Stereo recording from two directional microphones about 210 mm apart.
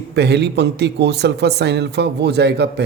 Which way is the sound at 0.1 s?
55° right (ahead or behind).